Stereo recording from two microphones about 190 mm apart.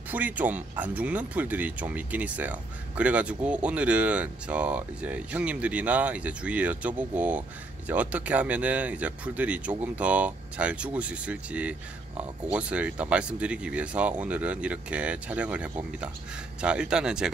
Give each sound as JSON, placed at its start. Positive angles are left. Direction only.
{"t": 0.1, "sound": "speech", "side_deg": -10}